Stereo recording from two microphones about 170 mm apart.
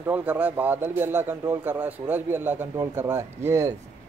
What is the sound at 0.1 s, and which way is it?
Speech, 10° right (ahead or behind).